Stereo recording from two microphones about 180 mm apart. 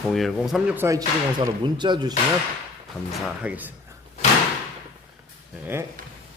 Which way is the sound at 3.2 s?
5° right (ahead or behind).